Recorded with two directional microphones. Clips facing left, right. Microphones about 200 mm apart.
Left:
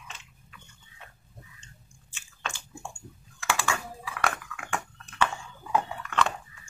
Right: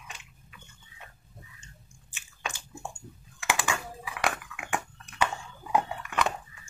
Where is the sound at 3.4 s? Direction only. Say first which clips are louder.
Even; 15° right (ahead or behind).